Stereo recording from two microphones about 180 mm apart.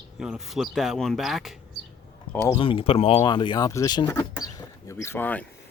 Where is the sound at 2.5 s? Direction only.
30° left (ahead or behind); by 5.4 s 10° left (ahead or behind).